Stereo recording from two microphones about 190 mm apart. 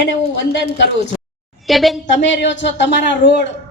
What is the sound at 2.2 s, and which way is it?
Speech, 70° left (ahead or behind).